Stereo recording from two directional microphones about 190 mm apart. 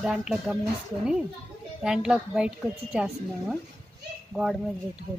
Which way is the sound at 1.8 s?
5° right (ahead or behind).